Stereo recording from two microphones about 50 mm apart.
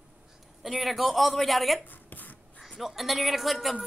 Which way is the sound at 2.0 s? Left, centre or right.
Left.